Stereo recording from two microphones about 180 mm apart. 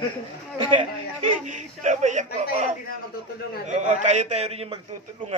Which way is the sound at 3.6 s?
40° right (ahead or behind).